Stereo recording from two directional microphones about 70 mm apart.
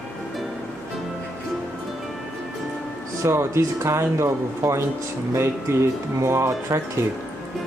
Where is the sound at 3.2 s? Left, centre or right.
Right.